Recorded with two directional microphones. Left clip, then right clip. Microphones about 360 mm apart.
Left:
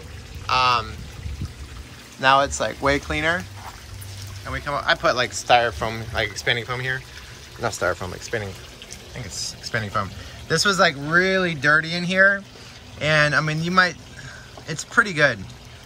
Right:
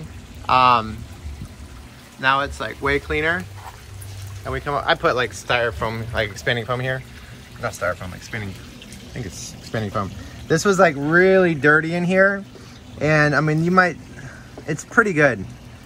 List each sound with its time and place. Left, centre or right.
0.5 s speech: centre
2.1 s speech: centre
4.5 s speech: centre
7.6 s speech: centre
9.7 s speech: centre
15.0 s speech: centre